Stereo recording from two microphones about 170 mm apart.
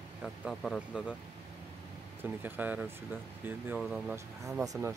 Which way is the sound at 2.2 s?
10° right (ahead or behind).